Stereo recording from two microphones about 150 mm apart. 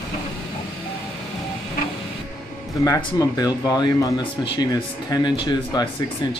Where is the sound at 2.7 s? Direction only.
20° left (ahead or behind).